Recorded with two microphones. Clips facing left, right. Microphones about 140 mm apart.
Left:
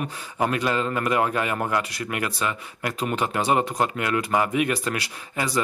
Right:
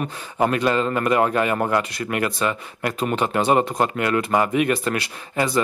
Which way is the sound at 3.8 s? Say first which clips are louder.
Right 3 dB; 50° right (ahead or behind).